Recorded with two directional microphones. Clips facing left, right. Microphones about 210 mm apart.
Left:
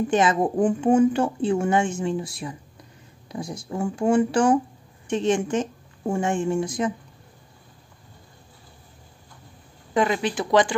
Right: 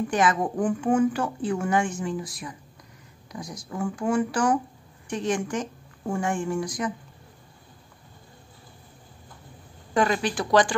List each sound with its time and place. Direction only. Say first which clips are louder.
0.1 s a woman's voice: left 3 dB; 25° left (ahead or behind)
9.9 s a woman's voice: left 1 dB; 20° left (ahead or behind)